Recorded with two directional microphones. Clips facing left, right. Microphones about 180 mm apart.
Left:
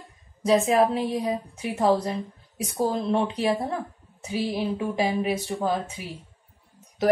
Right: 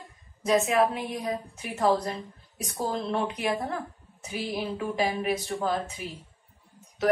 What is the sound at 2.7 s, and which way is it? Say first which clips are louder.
Speech: left 5 dB; 20° left (ahead or behind).